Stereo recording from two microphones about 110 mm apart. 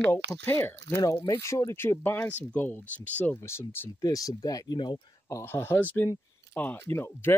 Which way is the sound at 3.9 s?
35° left (ahead or behind).